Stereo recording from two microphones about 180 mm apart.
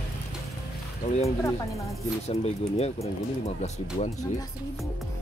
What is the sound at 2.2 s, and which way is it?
Speech, 35° left (ahead or behind).